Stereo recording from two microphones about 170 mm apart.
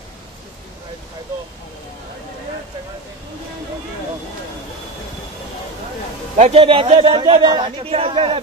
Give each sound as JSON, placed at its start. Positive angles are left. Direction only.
{"t": 6.3, "sound": "a man's voice", "side_deg": -40}